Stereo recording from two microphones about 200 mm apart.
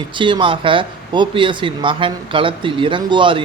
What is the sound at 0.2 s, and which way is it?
A man's voice, 25° right (ahead or behind).